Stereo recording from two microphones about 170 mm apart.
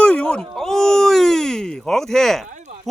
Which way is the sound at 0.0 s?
5° left (ahead or behind).